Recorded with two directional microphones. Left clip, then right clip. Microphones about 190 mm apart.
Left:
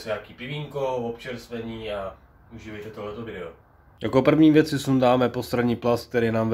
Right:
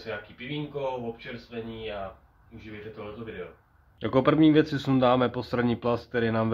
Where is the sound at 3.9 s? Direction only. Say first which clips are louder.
Left 3 dB; 5° right (ahead or behind).